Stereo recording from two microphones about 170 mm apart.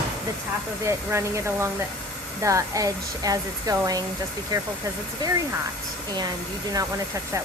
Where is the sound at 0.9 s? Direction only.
15° right (ahead or behind).